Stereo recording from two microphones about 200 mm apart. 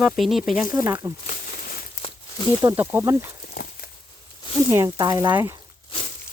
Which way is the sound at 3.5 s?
50° left (ahead or behind).